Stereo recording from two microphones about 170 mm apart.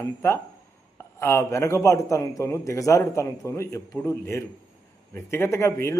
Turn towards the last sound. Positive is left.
turn(degrees=15)  # may be behind; listen again after turning